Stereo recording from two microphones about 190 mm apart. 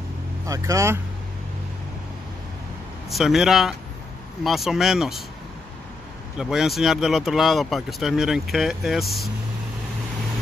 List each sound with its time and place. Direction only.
0.5 s speech: 15° right (ahead or behind)
3.1 s speech: centre (ahead or behind)
6.3 s speech: centre (ahead or behind)